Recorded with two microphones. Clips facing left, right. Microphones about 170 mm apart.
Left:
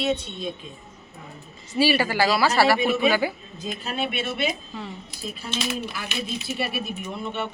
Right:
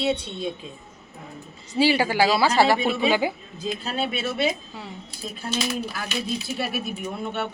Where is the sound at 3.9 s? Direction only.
35° right (ahead or behind).